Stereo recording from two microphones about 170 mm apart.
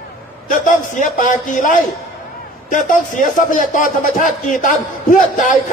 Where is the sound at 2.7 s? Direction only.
50° left (ahead or behind).